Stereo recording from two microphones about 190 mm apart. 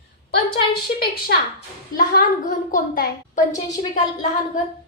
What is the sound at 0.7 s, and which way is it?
A woman's voice, 55° left (ahead or behind).